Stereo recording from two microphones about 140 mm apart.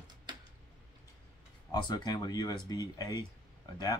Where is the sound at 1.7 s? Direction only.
25° left (ahead or behind).